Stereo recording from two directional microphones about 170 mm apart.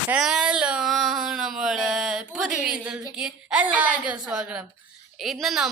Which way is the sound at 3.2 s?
5° right (ahead or behind).